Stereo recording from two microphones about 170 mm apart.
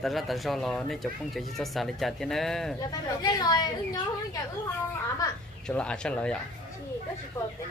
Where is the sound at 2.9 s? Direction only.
25° left (ahead or behind).